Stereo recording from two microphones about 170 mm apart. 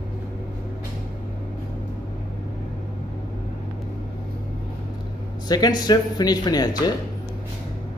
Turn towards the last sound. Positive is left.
turn(degrees=25)  # may be behind; listen again after turning